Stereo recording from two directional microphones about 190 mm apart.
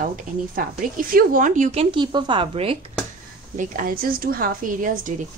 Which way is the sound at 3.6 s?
45° right (ahead or behind).